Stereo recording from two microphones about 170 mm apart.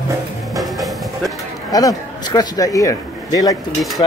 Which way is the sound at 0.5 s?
Centre (ahead or behind).